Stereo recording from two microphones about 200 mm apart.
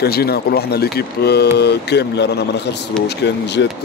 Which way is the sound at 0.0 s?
50° left (ahead or behind).